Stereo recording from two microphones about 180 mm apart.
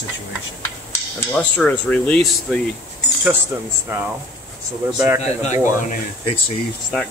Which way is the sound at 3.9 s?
15° right (ahead or behind).